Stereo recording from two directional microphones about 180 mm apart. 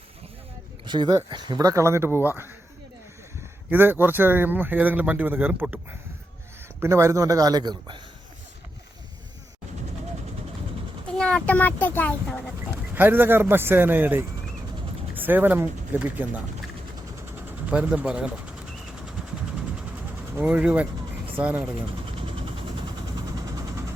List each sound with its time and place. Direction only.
0.9 s speech: 25° right (ahead or behind)
3.7 s speech: 10° right (ahead or behind)
11.2 s a child's voice: 5° left (ahead or behind)
12.9 s speech: 10° right (ahead or behind)
17.7 s speech: 5° right (ahead or behind)
20.3 s speech: 10° right (ahead or behind)